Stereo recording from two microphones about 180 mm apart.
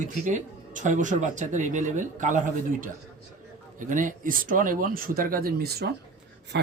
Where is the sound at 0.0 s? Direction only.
45° right (ahead or behind).